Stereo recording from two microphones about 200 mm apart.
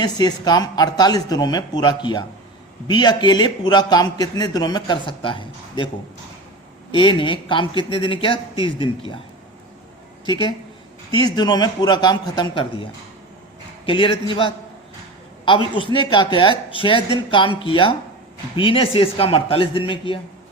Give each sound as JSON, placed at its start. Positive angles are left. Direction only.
{"t": 0.0, "sound": "a man's voice", "side_deg": 20}
{"t": 6.9, "sound": "a man's voice", "side_deg": 25}
{"t": 11.1, "sound": "a man's voice", "side_deg": 20}